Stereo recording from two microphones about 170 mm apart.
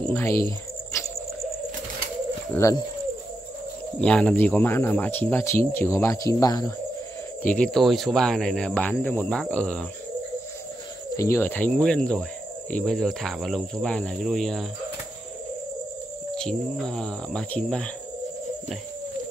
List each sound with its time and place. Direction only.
0.0 s speech: 15° left (ahead or behind)
2.5 s speech: 20° left (ahead or behind)
4.0 s speech: 5° left (ahead or behind); by 6.7 s 20° left (ahead or behind)
7.4 s speech: 5° left (ahead or behind)
11.1 s speech: 15° left (ahead or behind)
16.3 s speech: 5° left (ahead or behind)